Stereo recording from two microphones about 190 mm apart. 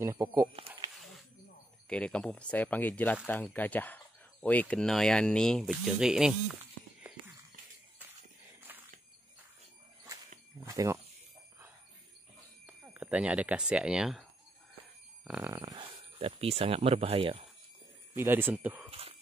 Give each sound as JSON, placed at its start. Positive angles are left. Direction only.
{"t": 0.0, "sound": "speech", "side_deg": -15}
{"t": 0.7, "sound": "snake", "side_deg": -20}
{"t": 1.9, "sound": "speech", "side_deg": 5}
{"t": 8.7, "sound": "a sound", "side_deg": -10}
{"t": 10.6, "sound": "speech", "side_deg": -15}
{"t": 12.6, "sound": "speech", "side_deg": -10}
{"t": 15.2, "sound": "speech", "side_deg": -5}
{"t": 15.5, "sound": "speech", "side_deg": -20}
{"t": 18.1, "sound": "speech", "side_deg": -10}
{"t": 18.9, "sound": "a sound", "side_deg": -30}